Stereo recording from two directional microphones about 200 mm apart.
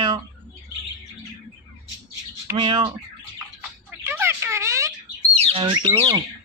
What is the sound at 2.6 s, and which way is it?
Speech, 25° right (ahead or behind).